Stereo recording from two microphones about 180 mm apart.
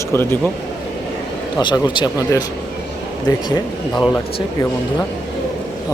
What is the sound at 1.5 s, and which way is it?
Speech, 20° left (ahead or behind).